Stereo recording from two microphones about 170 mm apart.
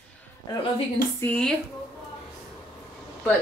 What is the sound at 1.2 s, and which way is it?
Speech, 15° left (ahead or behind).